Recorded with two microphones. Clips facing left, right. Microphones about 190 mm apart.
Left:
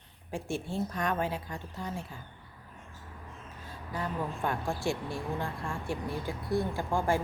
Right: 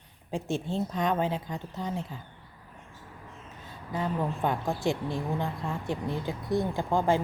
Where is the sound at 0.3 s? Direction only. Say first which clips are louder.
Right 4 dB; 20° right (ahead or behind).